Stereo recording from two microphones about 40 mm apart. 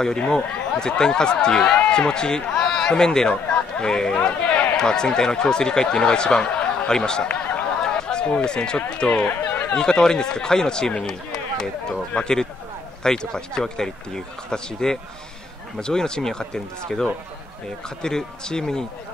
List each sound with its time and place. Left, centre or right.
0.3 s speech: centre
4.2 s a man's voice: left
4.7 s speech: centre
7.8 s chatter: left
8.5 s speech: left
9.1 s chatter: left
9.8 s speech: centre